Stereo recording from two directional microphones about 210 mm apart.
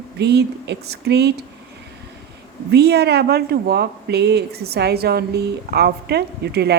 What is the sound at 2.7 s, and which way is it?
Speech, 50° right (ahead or behind).